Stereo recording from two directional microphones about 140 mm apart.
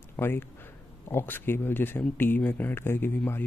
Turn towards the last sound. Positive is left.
turn(degrees=15)  # may be behind; listen again after turning